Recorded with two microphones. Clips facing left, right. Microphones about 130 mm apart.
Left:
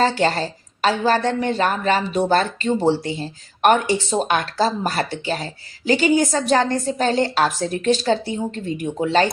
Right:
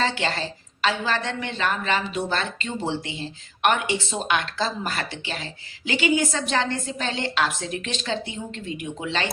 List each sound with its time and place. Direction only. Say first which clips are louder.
0.0 s a woman's voice: left 7 dB; 40° left (ahead or behind)